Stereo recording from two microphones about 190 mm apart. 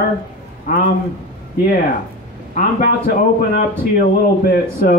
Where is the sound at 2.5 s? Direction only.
50° left (ahead or behind).